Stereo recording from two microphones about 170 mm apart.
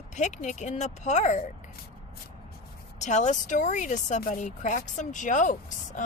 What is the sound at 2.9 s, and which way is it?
Speech, 45° left (ahead or behind).